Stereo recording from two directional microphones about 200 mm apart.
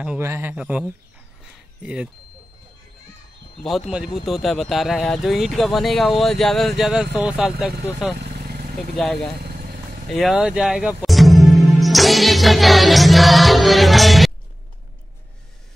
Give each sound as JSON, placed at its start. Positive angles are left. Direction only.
{"t": 0.0, "sound": "a man's voice", "side_deg": -10}
{"t": 1.4, "sound": "a sound", "side_deg": -5}
{"t": 3.9, "sound": "speech", "side_deg": -5}
{"t": 8.2, "sound": "vehicle", "side_deg": -50}
{"t": 8.9, "sound": "speech", "side_deg": 0}
{"t": 9.4, "sound": "vehicle", "side_deg": -50}
{"t": 10.0, "sound": "speech", "side_deg": 0}